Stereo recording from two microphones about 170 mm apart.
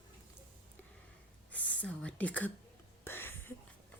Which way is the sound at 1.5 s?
10° left (ahead or behind).